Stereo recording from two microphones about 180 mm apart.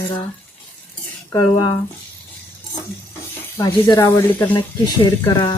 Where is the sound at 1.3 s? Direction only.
20° left (ahead or behind).